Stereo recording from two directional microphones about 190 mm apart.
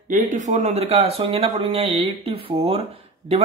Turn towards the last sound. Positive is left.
turn(degrees=-30)  # may be behind; listen again after turning